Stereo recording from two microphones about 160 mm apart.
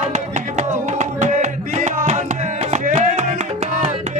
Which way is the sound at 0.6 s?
50° right (ahead or behind).